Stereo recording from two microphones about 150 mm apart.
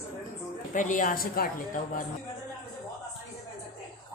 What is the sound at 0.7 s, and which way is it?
Speech, 60° left (ahead or behind).